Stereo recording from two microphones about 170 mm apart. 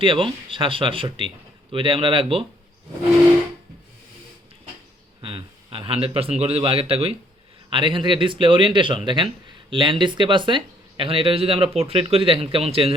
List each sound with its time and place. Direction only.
0.0 s speech: 30° right (ahead or behind)
5.2 s a man's voice: 30° right (ahead or behind)